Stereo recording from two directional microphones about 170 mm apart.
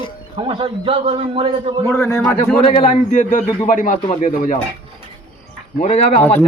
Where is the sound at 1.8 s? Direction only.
15° left (ahead or behind).